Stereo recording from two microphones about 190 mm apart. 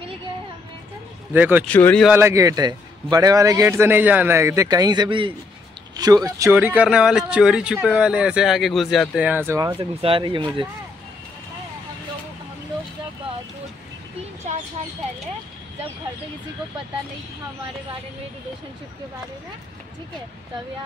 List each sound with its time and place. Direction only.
1.3 s a man's voice: 10° right (ahead or behind)
1.7 s speech: 10° left (ahead or behind)
2.0 s a man's voice: 15° right (ahead or behind)